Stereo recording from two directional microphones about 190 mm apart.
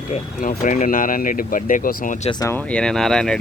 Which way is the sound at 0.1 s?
40° left (ahead or behind).